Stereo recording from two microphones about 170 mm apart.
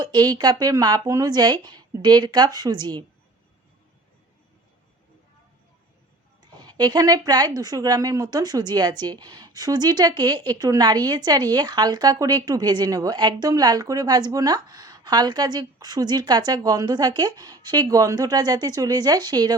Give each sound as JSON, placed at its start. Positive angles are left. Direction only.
{"t": 0.0, "sound": "a woman's voice", "side_deg": -25}
{"t": 6.6, "sound": "a woman's voice", "side_deg": -25}